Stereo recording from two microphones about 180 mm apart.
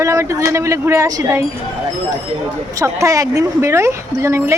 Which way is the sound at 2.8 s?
15° right (ahead or behind).